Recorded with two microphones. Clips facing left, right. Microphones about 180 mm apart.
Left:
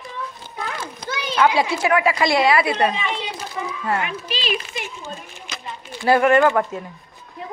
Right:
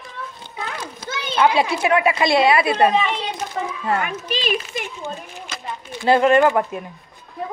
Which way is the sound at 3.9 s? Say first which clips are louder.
Right 2 dB; 50° right (ahead or behind).